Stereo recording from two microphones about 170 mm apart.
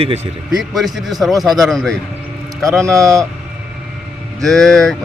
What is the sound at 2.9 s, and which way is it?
Speech, 20° right (ahead or behind).